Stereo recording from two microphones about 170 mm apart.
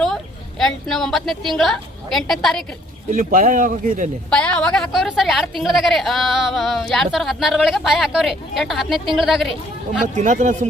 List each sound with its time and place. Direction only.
0.6 s a woman's voice: centre (ahead or behind)
3.1 s speech: 55° right (ahead or behind)
4.3 s a woman's voice: 5° left (ahead or behind)
10.2 s speech: 45° right (ahead or behind)